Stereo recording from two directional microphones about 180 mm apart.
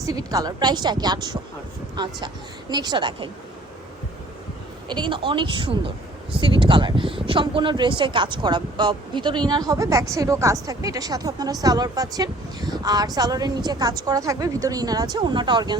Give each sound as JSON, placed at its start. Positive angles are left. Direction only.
{"t": 0.0, "sound": "a woman's voice", "side_deg": -20}
{"t": 4.9, "sound": "a woman's voice", "side_deg": -25}